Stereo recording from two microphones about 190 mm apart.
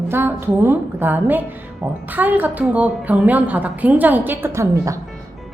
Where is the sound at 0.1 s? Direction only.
10° right (ahead or behind).